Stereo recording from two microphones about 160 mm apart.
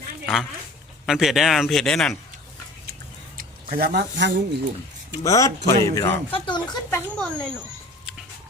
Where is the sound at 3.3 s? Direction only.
70° right (ahead or behind); by 4.4 s 90° right.